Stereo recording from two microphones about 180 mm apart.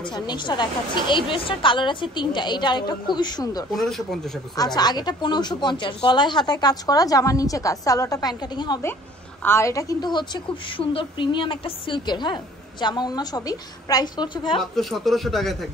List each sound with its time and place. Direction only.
0.1 s a woman's voice: 25° left (ahead or behind)
3.7 s a man's voice: centre (ahead or behind)
4.7 s a woman's voice: 25° left (ahead or behind)
14.6 s a man's voice: centre (ahead or behind)